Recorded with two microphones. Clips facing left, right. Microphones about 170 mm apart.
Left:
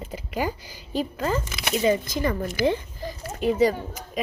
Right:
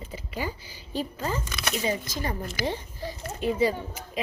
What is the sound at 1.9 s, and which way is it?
Speech, 70° left (ahead or behind).